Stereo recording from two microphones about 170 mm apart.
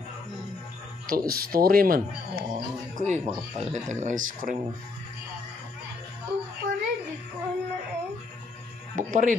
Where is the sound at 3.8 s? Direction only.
50° right (ahead or behind).